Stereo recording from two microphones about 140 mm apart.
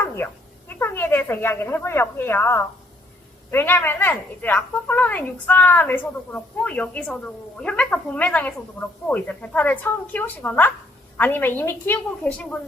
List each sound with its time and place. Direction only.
0.2 s a woman's voice: 20° left (ahead or behind)